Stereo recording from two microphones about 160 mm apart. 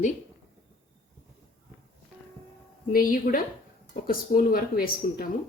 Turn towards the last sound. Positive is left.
turn(degrees=60)  # may be behind; listen again after turning